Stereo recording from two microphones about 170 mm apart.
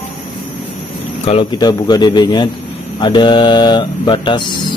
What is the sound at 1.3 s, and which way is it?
Speech, 30° left (ahead or behind).